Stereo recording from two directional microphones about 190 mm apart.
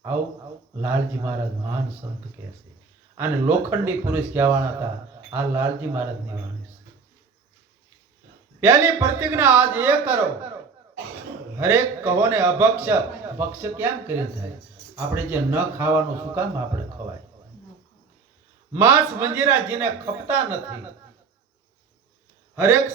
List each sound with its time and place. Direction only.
0.8 s a man's voice: 10° right (ahead or behind)
2.0 s speech: 25° right (ahead or behind)
3.2 s a man's voice: 10° right (ahead or behind)
8.6 s a man's voice: 15° right (ahead or behind)
11.5 s a man's voice: 10° right (ahead or behind)
14.9 s a man's voice: 10° right (ahead or behind)
18.7 s a man's voice: 10° right (ahead or behind)
22.5 s a man's voice: 15° right (ahead or behind)